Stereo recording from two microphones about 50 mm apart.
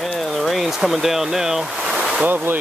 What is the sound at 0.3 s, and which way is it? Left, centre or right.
Speech, centre.